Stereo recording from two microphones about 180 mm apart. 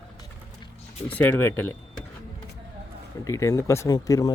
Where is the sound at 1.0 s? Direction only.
10° left (ahead or behind).